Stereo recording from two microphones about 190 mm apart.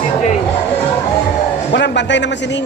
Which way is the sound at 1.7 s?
70° left (ahead or behind).